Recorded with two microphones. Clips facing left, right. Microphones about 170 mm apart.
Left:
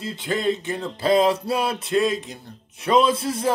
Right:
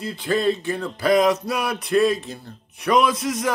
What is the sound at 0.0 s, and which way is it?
Music, 20° left (ahead or behind).